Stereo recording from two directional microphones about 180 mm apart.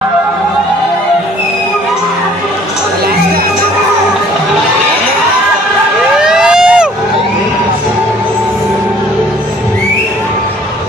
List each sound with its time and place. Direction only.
6.1 s emergency vehicle: 5° right (ahead or behind)